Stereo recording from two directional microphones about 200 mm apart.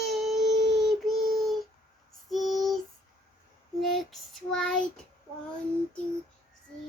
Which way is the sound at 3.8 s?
Centre (ahead or behind).